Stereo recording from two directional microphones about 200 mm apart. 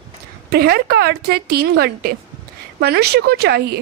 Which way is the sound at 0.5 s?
50° right (ahead or behind).